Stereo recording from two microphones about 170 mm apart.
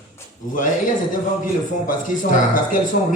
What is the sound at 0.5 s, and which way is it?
Speech, 50° left (ahead or behind).